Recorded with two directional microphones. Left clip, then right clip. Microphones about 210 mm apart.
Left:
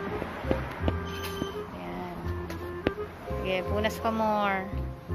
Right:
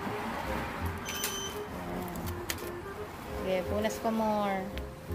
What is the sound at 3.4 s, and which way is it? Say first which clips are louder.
Speech: left 2 dB; 5° right (ahead or behind).